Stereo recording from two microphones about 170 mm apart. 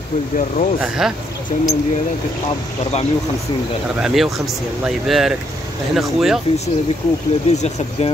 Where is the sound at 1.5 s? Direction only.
45° left (ahead or behind).